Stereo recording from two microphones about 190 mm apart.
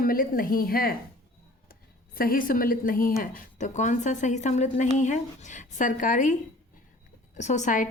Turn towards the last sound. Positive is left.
turn(degrees=40)  # may be behind; listen again after turning